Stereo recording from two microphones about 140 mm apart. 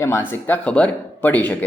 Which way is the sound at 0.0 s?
15° left (ahead or behind).